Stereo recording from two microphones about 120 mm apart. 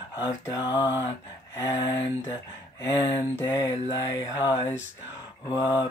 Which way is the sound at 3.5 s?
30° left (ahead or behind).